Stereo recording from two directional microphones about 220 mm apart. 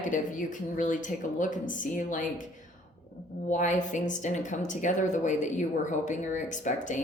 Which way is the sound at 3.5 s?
35° left (ahead or behind).